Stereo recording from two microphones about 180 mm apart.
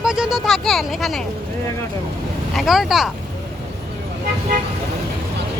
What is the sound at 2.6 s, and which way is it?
Speech, centre (ahead or behind).